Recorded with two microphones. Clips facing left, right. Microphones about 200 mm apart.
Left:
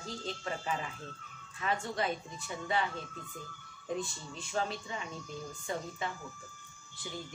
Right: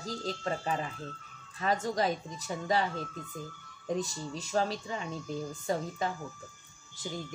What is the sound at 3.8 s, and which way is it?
Speech, 40° right (ahead or behind).